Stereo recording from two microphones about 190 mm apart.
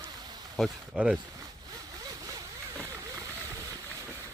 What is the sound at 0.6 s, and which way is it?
Speech, centre (ahead or behind).